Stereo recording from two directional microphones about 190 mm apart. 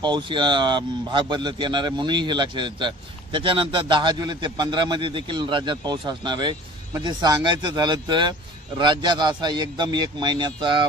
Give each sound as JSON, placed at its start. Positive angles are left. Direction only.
{"t": 0.0, "sound": "a man's voice", "side_deg": -25}